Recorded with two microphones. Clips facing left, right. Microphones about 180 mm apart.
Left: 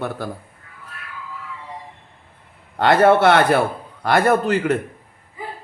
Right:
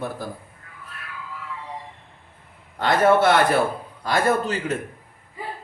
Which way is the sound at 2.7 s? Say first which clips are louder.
Left 4 dB; 65° left (ahead or behind).